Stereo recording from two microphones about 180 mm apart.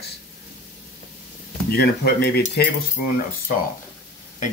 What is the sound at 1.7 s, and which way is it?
Speech, 65° left (ahead or behind).